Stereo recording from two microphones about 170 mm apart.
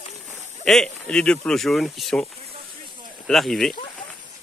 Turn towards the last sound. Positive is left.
turn(degrees=0)  # may be behind; listen again after turning